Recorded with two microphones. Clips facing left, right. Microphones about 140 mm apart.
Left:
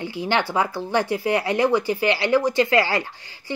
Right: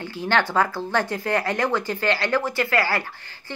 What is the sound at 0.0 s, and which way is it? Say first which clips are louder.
Speech: even; 15° left (ahead or behind).